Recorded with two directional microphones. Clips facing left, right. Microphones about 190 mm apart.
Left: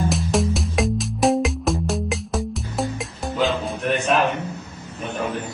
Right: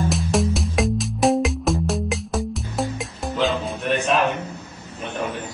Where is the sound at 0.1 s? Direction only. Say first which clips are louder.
Even; centre (ahead or behind).